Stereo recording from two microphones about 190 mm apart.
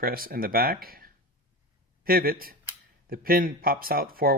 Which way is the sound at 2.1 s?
50° right (ahead or behind).